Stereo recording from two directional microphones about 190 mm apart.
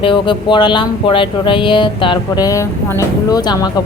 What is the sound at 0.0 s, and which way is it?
Speech, 25° left (ahead or behind).